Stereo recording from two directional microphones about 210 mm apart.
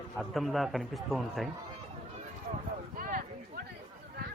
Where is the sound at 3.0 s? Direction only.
40° right (ahead or behind).